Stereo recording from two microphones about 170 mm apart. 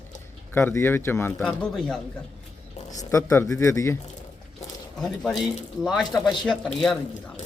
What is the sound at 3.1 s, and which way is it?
Speech, 15° left (ahead or behind).